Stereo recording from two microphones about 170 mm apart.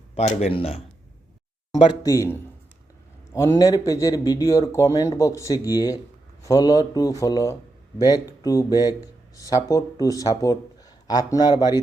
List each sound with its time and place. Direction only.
0.2 s speech: 40° left (ahead or behind)
1.7 s speech: 20° left (ahead or behind)